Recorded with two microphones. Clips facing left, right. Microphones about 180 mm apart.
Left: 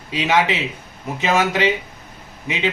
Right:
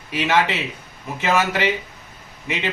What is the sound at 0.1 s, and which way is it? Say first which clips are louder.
A man's voice: left 1 dB; 15° left (ahead or behind).